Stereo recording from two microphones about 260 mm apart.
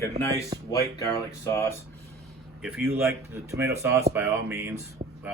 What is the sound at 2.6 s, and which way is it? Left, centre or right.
A man's voice, centre.